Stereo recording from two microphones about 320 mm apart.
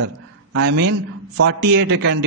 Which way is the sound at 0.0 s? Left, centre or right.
Right.